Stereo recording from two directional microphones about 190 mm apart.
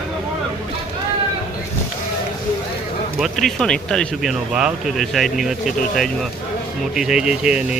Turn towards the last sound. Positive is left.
turn(degrees=-5)  # may be behind; listen again after turning